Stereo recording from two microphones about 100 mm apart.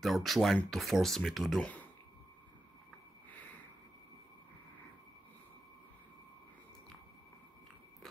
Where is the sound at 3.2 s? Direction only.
15° left (ahead or behind).